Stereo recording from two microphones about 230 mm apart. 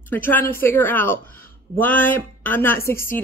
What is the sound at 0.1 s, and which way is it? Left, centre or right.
A woman's voice, centre.